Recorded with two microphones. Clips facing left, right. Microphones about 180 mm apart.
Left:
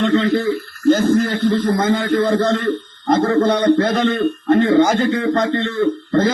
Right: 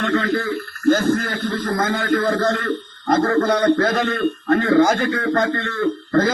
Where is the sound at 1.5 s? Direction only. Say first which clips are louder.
Left 3 dB; 25° left (ahead or behind).